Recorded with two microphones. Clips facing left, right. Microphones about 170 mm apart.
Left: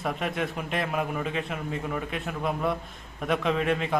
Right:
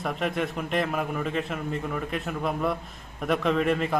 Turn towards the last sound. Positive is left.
turn(degrees=0)  # may be behind; listen again after turning